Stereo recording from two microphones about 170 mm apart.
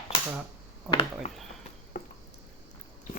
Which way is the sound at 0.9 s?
30° left (ahead or behind).